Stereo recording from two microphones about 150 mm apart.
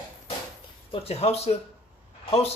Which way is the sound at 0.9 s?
45° left (ahead or behind).